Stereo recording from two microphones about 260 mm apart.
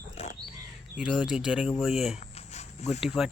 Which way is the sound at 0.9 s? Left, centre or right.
Centre.